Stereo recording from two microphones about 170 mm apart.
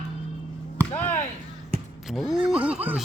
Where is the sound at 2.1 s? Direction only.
Centre (ahead or behind).